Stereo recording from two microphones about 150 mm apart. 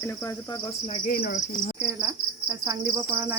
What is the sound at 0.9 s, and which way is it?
Cricket, 75° left (ahead or behind).